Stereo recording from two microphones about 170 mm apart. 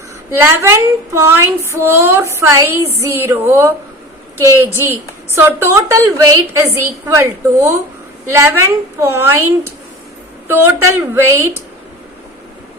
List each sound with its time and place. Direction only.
0.4 s a woman's voice: 15° right (ahead or behind)
4.8 s a woman's voice: 15° right (ahead or behind)
10.5 s a woman's voice: 15° right (ahead or behind)